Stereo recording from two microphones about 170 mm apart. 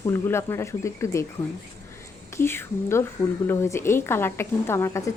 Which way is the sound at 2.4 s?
15° left (ahead or behind).